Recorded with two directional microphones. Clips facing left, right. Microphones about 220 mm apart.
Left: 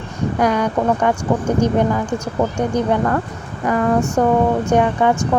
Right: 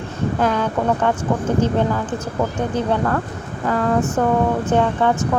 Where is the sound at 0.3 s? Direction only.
15° left (ahead or behind).